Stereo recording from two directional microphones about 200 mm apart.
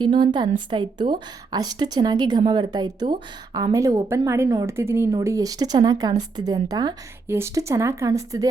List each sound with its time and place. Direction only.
0.0 s speech: 25° right (ahead or behind)